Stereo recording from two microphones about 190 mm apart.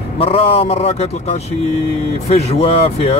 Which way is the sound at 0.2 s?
30° left (ahead or behind).